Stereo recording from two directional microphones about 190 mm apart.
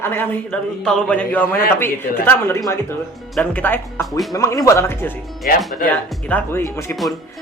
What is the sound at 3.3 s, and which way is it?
A man's voice, 10° left (ahead or behind).